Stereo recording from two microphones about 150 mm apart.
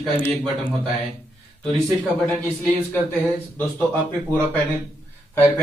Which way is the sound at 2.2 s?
10° left (ahead or behind).